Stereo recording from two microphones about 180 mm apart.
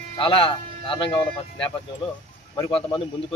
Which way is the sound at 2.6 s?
25° left (ahead or behind).